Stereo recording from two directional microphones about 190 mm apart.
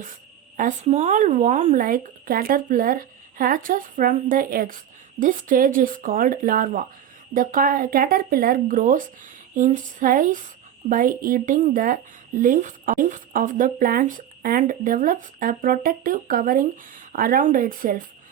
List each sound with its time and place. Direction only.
0.5 s speech: 40° right (ahead or behind)